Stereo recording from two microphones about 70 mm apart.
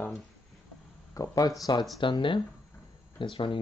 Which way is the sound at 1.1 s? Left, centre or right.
Left.